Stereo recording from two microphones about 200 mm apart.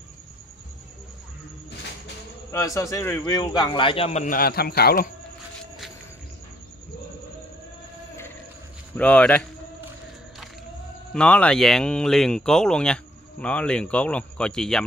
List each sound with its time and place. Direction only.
2.5 s a man's voice: 15° left (ahead or behind); by 5.1 s 50° left (ahead or behind)
8.9 s speech: 5° left (ahead or behind)
11.1 s speech: 5° left (ahead or behind)